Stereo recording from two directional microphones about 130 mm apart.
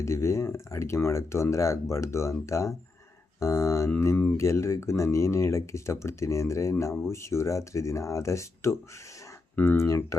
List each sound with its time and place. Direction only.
0.0 s speech: 20° left (ahead or behind)